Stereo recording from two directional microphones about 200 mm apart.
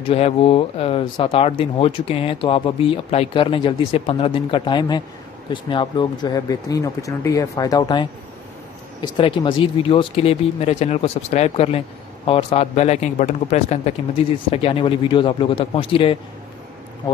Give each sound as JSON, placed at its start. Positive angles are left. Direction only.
{"t": 0.1, "sound": "speech", "side_deg": 30}